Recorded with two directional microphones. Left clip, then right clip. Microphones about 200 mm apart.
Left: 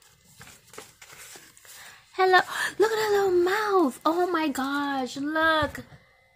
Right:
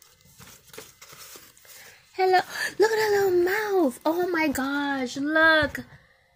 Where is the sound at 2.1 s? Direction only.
10° left (ahead or behind).